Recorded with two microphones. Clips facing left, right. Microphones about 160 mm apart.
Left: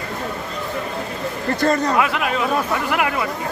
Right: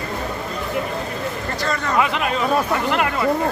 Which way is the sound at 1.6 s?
50° left (ahead or behind).